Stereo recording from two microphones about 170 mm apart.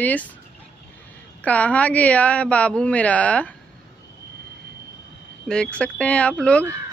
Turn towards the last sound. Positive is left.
turn(degrees=5)  # may be behind; listen again after turning